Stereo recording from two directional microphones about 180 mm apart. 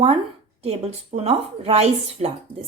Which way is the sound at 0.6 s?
35° right (ahead or behind).